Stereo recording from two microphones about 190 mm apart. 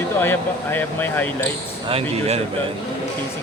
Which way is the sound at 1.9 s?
30° right (ahead or behind).